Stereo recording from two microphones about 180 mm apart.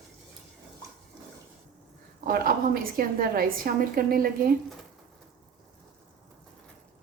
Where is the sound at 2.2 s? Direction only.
55° right (ahead or behind).